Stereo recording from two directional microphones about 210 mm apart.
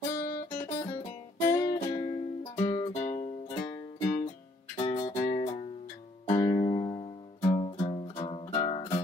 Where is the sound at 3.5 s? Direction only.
15° left (ahead or behind).